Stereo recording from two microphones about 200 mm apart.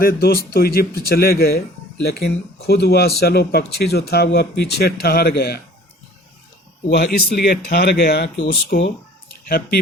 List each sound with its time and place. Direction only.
0.0 s speech: 50° left (ahead or behind)
6.9 s speech: 50° left (ahead or behind)